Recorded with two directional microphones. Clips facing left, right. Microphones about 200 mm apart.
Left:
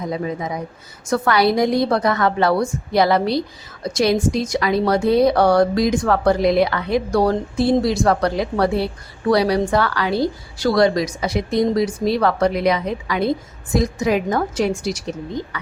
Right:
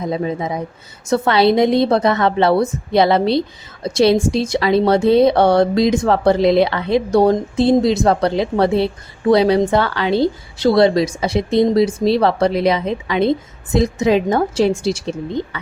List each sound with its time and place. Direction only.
0.0 s speech: 25° right (ahead or behind)